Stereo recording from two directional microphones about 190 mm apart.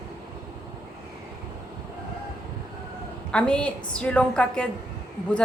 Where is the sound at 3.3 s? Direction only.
5° left (ahead or behind).